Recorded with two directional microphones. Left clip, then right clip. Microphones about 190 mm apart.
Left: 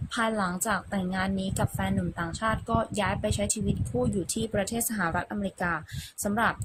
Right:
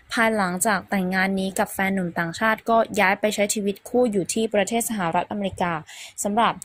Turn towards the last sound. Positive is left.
turn(degrees=-15)  # may be behind; listen again after turning